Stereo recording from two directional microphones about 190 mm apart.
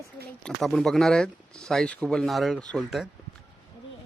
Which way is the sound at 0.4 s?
Centre (ahead or behind).